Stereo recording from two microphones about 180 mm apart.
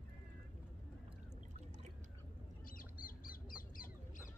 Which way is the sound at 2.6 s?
50° left (ahead or behind).